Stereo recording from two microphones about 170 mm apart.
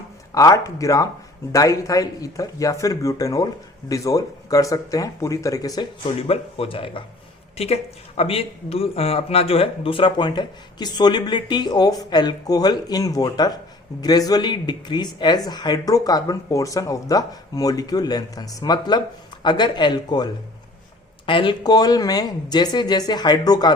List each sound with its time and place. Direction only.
0.3 s speech: 20° left (ahead or behind)
6.2 s speech: 35° left (ahead or behind)